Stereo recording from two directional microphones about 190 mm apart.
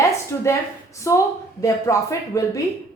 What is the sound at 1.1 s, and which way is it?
A woman's voice, 15° left (ahead or behind).